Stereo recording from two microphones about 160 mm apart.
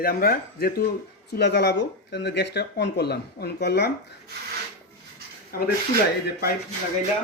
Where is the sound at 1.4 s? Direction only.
90° left.